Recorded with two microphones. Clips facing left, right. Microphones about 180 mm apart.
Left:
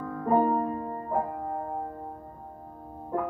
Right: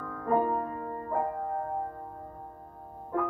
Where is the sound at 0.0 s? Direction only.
25° left (ahead or behind).